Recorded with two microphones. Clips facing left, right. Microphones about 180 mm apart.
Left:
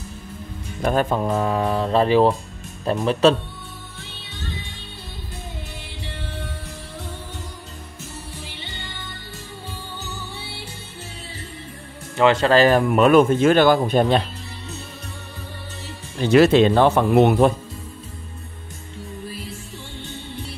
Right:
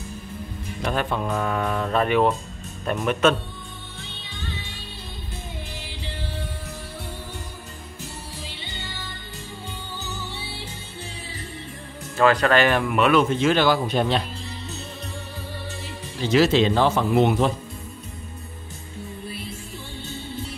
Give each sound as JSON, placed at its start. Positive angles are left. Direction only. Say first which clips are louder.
{"t": 0.8, "sound": "mantra", "louder": "left 5 dB", "side_deg": 40}
{"t": 1.2, "sound": "mantra", "louder": "left 4 dB", "side_deg": 30}
{"t": 12.2, "sound": "speech", "louder": "left 3 dB", "side_deg": 25}
{"t": 16.2, "sound": "speech", "louder": "left 5 dB", "side_deg": 60}